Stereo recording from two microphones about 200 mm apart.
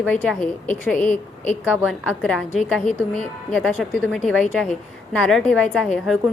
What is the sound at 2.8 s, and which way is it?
Speech, 35° left (ahead or behind).